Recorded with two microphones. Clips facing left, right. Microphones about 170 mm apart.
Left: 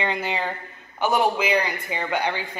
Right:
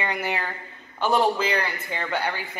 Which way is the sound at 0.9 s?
10° left (ahead or behind).